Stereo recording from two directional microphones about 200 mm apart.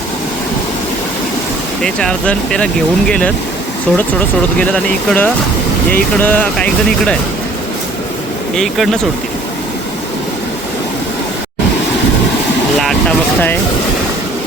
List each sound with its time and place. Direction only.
1.8 s speech: 5° left (ahead or behind)
4.6 s speech: 5° left (ahead or behind)
8.5 s speech: centre (ahead or behind)
12.8 s speech: 5° left (ahead or behind)